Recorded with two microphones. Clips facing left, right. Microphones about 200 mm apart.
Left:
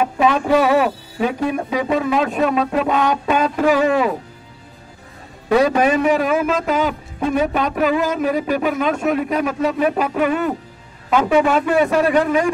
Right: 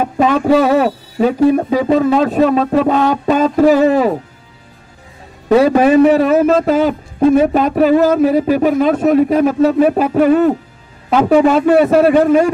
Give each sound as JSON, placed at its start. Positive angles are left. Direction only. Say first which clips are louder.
{"t": 0.0, "sound": "speech", "louder": "right 3 dB", "side_deg": -40}
{"t": 5.7, "sound": "speech", "louder": "right 7 dB", "side_deg": -35}